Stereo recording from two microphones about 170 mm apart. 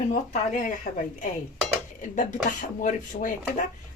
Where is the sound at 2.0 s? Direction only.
50° left (ahead or behind).